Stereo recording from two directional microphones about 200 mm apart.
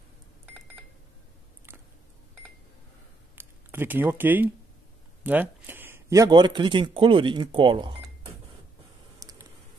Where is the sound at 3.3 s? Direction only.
10° right (ahead or behind).